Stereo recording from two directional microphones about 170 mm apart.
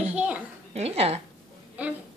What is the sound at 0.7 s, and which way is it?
Speech, 35° right (ahead or behind).